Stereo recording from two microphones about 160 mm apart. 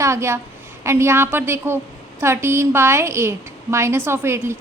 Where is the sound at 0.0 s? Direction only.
15° right (ahead or behind).